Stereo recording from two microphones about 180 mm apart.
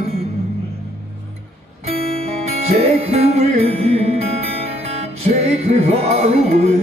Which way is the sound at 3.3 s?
35° right (ahead or behind).